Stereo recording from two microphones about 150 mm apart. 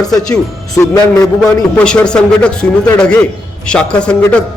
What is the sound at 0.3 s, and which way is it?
A man's voice, 25° left (ahead or behind).